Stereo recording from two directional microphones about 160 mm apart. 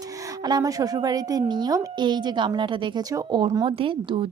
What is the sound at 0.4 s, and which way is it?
A woman's voice, 25° right (ahead or behind).